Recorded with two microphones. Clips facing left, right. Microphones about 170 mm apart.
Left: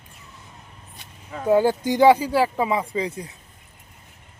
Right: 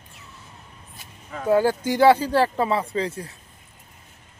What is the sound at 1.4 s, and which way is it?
Speech, 20° left (ahead or behind).